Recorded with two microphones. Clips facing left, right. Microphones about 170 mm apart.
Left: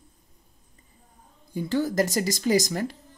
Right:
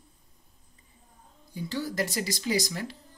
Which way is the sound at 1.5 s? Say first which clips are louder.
Left 7 dB; 50° left (ahead or behind).